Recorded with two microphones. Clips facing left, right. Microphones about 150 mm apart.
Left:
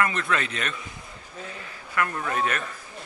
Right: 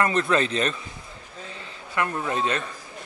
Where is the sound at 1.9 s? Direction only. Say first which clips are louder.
Right 1 dB; 20° right (ahead or behind).